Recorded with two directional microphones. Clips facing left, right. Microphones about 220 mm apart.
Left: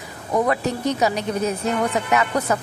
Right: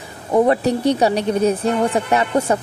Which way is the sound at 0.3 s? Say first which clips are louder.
Right 6 dB; 30° right (ahead or behind).